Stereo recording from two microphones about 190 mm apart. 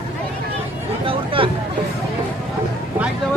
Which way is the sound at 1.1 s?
30° right (ahead or behind).